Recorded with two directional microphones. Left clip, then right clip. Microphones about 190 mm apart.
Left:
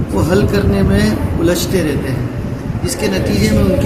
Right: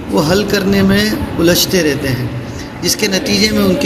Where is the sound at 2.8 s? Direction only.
20° right (ahead or behind).